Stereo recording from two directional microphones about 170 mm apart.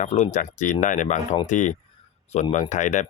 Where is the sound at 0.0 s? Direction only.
45° left (ahead or behind).